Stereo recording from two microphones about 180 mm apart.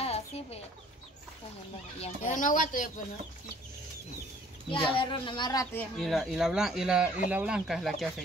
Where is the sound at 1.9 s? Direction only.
40° left (ahead or behind).